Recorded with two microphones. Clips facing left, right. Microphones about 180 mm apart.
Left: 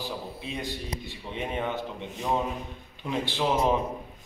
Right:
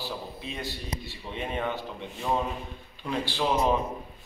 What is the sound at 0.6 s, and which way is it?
A man's voice, 20° left (ahead or behind).